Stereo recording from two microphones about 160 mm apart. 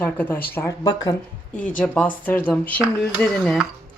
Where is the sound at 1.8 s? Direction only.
10° left (ahead or behind).